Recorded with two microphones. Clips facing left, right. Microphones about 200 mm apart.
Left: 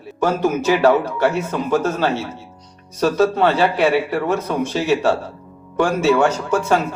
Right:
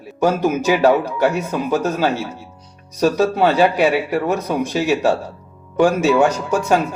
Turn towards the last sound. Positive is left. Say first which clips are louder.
# right 1 dB
turn(degrees=-10)  # may be behind; listen again after turning